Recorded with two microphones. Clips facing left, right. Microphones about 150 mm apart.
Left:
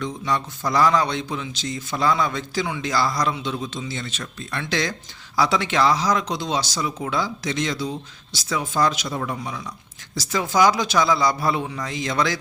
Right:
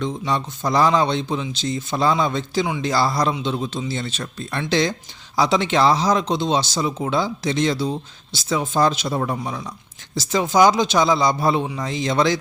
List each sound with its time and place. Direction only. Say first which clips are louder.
0.0 s speech: right 2 dB; 25° right (ahead or behind)
10.2 s speech: right 3 dB; 20° right (ahead or behind)